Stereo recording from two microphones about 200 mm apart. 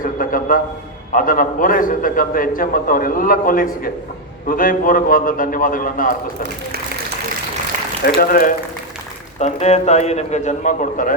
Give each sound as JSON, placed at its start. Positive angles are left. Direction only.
{"t": 0.0, "sound": "a sound", "side_deg": 45}
{"t": 1.1, "sound": "a man's voice", "side_deg": 45}
{"t": 8.0, "sound": "a man's voice", "side_deg": 45}
{"t": 9.4, "sound": "speech", "side_deg": 35}